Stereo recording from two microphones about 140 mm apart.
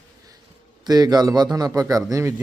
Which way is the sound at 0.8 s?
30° right (ahead or behind).